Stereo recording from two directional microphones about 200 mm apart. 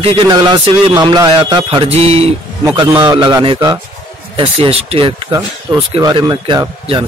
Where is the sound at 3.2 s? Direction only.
25° right (ahead or behind).